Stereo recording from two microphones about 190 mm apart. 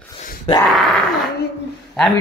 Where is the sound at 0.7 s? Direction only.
Centre (ahead or behind).